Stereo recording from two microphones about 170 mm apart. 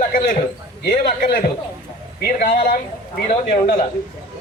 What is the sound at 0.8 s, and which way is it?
A man's voice, 70° left (ahead or behind).